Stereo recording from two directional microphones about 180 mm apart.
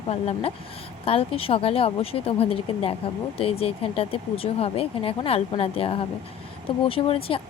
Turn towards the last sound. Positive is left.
turn(degrees=30)  # may be behind; listen again after turning